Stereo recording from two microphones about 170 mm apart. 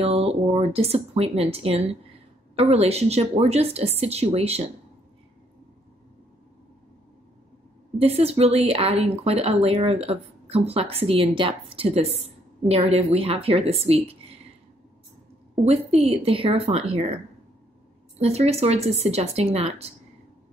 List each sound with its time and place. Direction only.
0.0 s speech: 35° right (ahead or behind)
8.0 s speech: 35° right (ahead or behind)
15.6 s speech: 40° right (ahead or behind)
18.2 s speech: 40° right (ahead or behind)